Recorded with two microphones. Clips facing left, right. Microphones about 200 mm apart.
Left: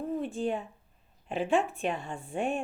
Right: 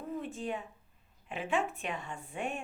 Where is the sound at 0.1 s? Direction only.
30° left (ahead or behind).